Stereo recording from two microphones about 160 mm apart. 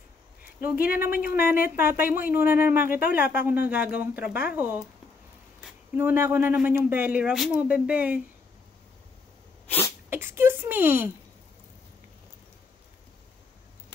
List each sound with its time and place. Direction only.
0.7 s speech: 65° left (ahead or behind)
1.8 s speech: 15° right (ahead or behind)
5.9 s speech: 15° right (ahead or behind)
9.7 s sneeze: 15° left (ahead or behind)
10.0 s a sound: 15° right (ahead or behind)